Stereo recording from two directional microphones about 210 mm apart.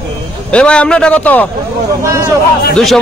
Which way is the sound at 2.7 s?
Centre (ahead or behind).